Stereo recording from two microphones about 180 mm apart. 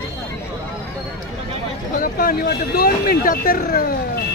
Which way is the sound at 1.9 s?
55° left (ahead or behind).